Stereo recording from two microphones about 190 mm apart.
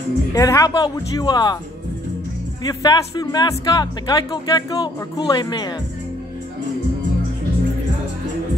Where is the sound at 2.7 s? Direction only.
20° left (ahead or behind).